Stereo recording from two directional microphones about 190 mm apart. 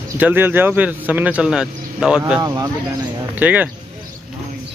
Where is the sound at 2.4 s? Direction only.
20° right (ahead or behind).